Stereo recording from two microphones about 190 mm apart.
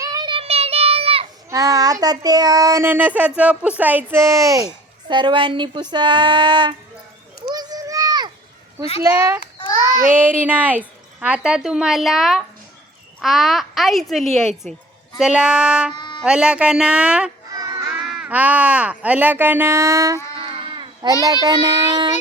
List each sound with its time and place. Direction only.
0.0 s child singing: 20° right (ahead or behind)
1.5 s child singing: 15° right (ahead or behind)
5.9 s a sound: 25° right (ahead or behind)
9.0 s child singing: 15° right (ahead or behind)
10.2 s a woman's voice: 10° right (ahead or behind)
16.0 s a sound: 25° left (ahead or behind)
16.2 s a woman's voice: 5° right (ahead or behind)
17.5 s baby cry: 20° right (ahead or behind)
18.0 s child singing: 5° right (ahead or behind)
20.3 s child singing: 25° right (ahead or behind)
21.4 s a sound: 20° right (ahead or behind)